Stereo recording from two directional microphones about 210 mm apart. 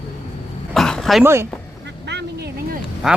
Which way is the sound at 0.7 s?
Centre (ahead or behind).